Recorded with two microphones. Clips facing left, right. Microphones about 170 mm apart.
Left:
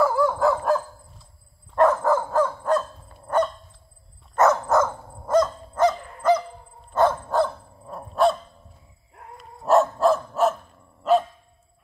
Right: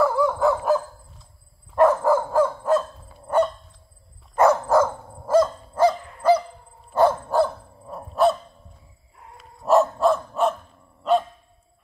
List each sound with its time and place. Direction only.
0.0 s dog: centre (ahead or behind)
9.4 s dog: centre (ahead or behind)